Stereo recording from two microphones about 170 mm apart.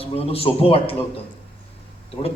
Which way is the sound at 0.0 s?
35° left (ahead or behind).